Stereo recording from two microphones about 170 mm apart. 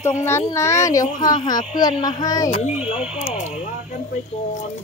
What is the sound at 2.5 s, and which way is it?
Speech, 40° left (ahead or behind).